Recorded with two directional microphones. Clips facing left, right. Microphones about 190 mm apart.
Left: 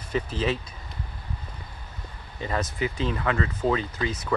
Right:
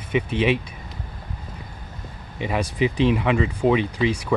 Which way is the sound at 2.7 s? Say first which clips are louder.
Right 8 dB; 15° right (ahead or behind).